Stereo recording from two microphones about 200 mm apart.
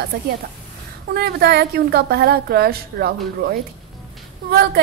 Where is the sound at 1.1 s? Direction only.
50° right (ahead or behind).